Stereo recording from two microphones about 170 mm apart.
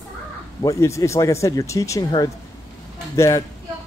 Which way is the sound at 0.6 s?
15° left (ahead or behind).